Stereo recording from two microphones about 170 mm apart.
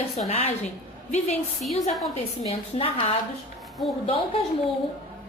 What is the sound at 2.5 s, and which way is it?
Speech, 35° left (ahead or behind).